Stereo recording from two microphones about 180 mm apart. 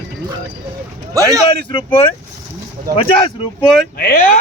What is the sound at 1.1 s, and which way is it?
Speech, 20° right (ahead or behind).